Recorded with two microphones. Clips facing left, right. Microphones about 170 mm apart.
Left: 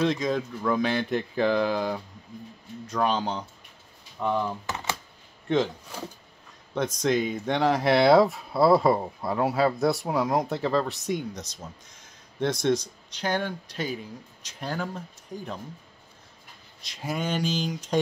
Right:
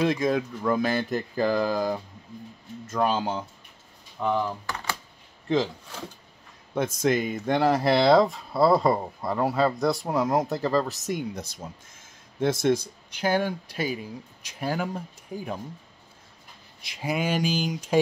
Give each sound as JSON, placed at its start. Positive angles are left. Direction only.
{"t": 0.0, "sound": "speech", "side_deg": -5}
{"t": 4.6, "sound": "typing", "side_deg": 20}
{"t": 5.5, "sound": "speech", "side_deg": 0}
{"t": 7.0, "sound": "speech", "side_deg": -5}
{"t": 16.8, "sound": "speech", "side_deg": -10}